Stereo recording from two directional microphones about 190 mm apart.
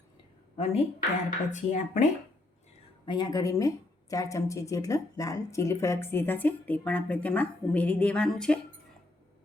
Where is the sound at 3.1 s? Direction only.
20° left (ahead or behind); by 8.5 s 5° left (ahead or behind).